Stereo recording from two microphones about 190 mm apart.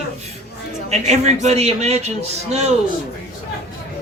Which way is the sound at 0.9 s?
35° right (ahead or behind).